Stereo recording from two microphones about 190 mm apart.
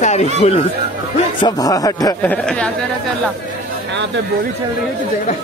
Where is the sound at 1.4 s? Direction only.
20° left (ahead or behind).